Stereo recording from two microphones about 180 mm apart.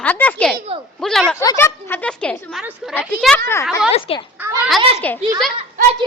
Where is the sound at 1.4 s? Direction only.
15° left (ahead or behind); by 2.9 s centre (ahead or behind).